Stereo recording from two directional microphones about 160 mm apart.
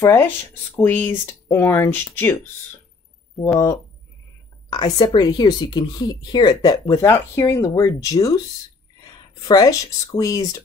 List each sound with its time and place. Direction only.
0.0 s speech: 15° left (ahead or behind)
3.5 s speech: 20° left (ahead or behind)
9.5 s speech: 20° left (ahead or behind)